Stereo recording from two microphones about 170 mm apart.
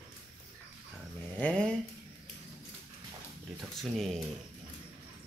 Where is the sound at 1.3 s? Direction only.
5° left (ahead or behind).